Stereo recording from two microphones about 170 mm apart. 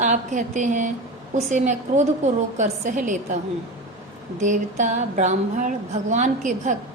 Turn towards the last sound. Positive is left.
turn(degrees=-45)  # may be behind; listen again after turning